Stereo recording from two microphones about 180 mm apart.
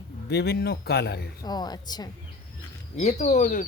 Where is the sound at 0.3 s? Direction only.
65° left (ahead or behind).